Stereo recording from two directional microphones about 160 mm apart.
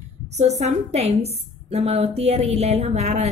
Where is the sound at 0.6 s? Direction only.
40° right (ahead or behind).